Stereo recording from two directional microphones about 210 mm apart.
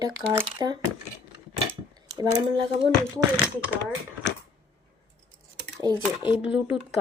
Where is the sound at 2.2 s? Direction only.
25° right (ahead or behind).